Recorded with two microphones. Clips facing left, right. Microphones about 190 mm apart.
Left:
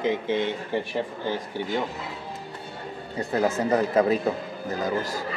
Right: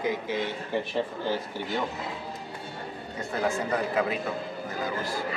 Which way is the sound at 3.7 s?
40° left (ahead or behind).